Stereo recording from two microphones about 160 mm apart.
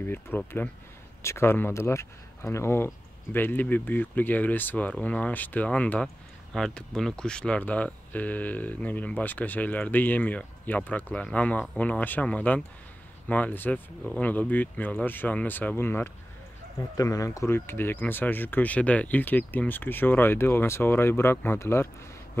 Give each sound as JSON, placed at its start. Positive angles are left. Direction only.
{"t": 0.0, "sound": "speech", "side_deg": 15}